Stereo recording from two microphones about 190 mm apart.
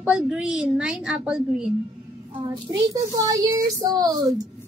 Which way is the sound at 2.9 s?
20° right (ahead or behind).